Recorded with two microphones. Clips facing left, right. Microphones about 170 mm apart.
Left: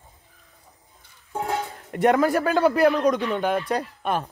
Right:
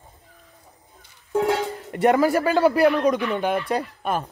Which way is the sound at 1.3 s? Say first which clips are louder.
Right 6 dB; 90° right.